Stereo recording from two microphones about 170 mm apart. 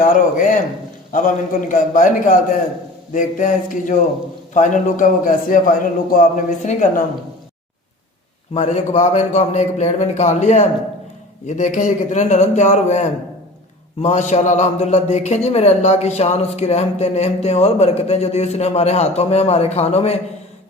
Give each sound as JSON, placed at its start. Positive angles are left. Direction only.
{"t": 0.0, "sound": "a man's voice", "side_deg": 50}
{"t": 8.5, "sound": "a man's voice", "side_deg": 40}